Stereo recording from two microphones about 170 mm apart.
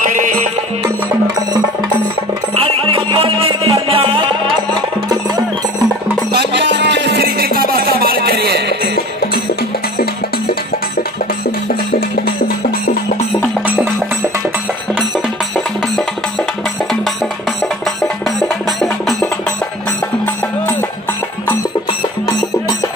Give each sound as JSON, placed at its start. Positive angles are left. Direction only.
{"t": 0.0, "sound": "music", "side_deg": -50}
{"t": 0.8, "sound": "music", "side_deg": -15}
{"t": 2.5, "sound": "music", "side_deg": -35}
{"t": 6.3, "sound": "music", "side_deg": -90}
{"t": 15.0, "sound": "music", "side_deg": 0}